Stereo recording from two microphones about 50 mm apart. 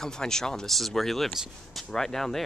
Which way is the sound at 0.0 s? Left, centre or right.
Centre.